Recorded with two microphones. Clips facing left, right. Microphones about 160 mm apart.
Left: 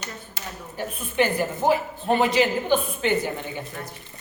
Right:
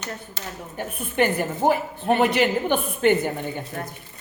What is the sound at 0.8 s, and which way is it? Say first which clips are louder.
A woman's voice: right 1 dB; 55° right (ahead or behind).